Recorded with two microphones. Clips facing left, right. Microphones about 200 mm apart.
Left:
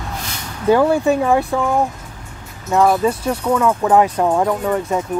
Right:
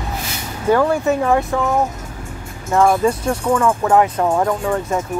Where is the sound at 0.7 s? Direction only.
15° left (ahead or behind).